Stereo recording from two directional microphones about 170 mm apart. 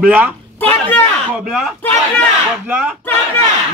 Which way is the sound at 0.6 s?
10° left (ahead or behind).